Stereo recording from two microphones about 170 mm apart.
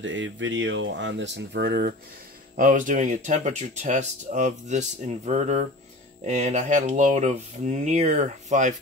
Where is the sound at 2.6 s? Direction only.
50° right (ahead or behind).